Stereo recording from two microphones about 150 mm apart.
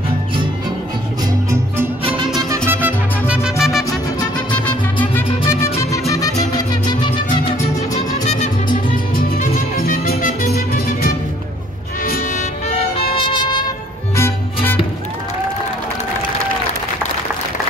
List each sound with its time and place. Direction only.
2.5 s music: 15° right (ahead or behind)
4.5 s music: 10° left (ahead or behind); by 7.5 s 35° left (ahead or behind)
8.1 s music: 50° left (ahead or behind)
9.1 s music: 75° left (ahead or behind)
12.4 s music: 45° left (ahead or behind)
14.1 s music: 15° left (ahead or behind)